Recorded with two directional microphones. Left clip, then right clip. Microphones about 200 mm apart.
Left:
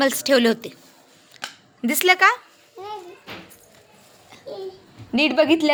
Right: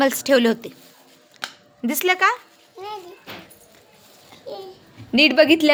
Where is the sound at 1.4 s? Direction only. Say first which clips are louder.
Even; centre (ahead or behind).